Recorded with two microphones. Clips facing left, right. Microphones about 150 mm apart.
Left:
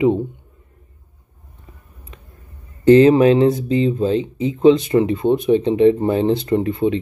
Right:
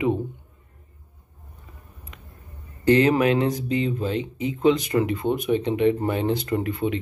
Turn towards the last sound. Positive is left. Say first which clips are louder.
# left 7 dB
turn(degrees=25)  # may be behind; listen again after turning